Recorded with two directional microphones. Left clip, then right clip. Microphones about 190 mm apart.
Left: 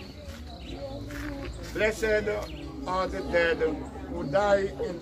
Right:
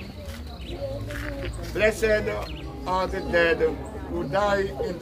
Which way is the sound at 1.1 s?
20° right (ahead or behind).